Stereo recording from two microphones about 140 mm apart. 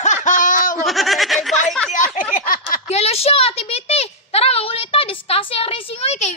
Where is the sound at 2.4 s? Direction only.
75° left (ahead or behind).